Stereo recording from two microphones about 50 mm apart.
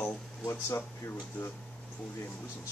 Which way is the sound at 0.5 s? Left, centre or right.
Left.